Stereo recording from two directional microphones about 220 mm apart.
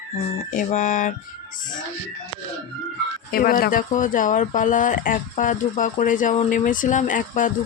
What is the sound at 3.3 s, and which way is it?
Speech, 40° left (ahead or behind).